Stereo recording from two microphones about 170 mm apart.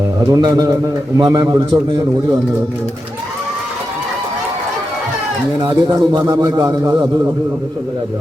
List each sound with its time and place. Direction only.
0.3 s a man's voice: 20° right (ahead or behind)
5.5 s a man's voice: 25° right (ahead or behind)